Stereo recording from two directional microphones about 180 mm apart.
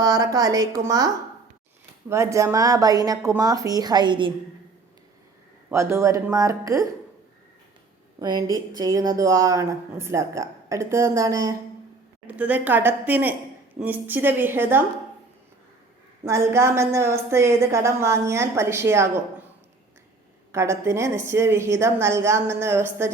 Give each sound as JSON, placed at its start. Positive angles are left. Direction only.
{"t": 0.0, "sound": "a woman's voice", "side_deg": -20}
{"t": 5.6, "sound": "a woman's voice", "side_deg": -15}
{"t": 8.2, "sound": "a woman's voice", "side_deg": -25}
{"t": 16.2, "sound": "a woman's voice", "side_deg": -15}
{"t": 20.5, "sound": "a woman's voice", "side_deg": -15}